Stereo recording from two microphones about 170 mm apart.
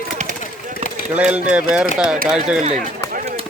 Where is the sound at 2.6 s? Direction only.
40° right (ahead or behind).